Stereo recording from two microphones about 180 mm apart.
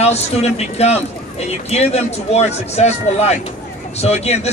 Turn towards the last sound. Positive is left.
turn(degrees=35)  # may be behind; listen again after turning